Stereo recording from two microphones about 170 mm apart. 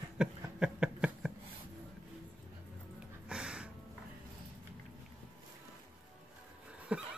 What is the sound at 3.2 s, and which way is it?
Music, 5° right (ahead or behind).